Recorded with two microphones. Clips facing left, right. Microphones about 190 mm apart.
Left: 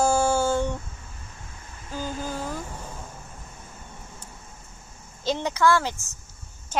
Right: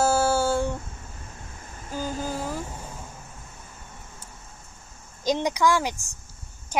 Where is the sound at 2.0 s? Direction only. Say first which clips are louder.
Right 1 dB; 40° right (ahead or behind).